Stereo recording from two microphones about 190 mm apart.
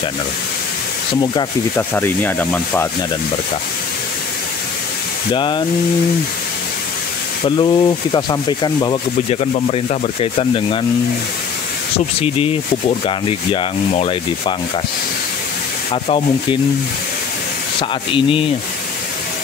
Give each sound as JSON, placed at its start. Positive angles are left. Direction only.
{"t": 1.8, "sound": "speech", "side_deg": 10}
{"t": 5.3, "sound": "speech", "side_deg": 25}
{"t": 7.4, "sound": "speech", "side_deg": 25}
{"t": 12.2, "sound": "speech", "side_deg": 30}
{"t": 17.7, "sound": "speech", "side_deg": 25}